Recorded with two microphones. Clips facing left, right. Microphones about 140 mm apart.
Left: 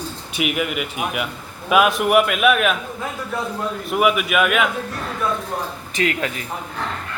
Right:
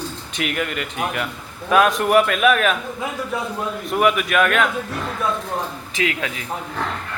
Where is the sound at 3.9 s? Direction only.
5° left (ahead or behind).